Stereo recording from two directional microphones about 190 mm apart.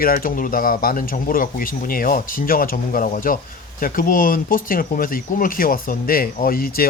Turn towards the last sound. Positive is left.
turn(degrees=50)  # may be behind; listen again after turning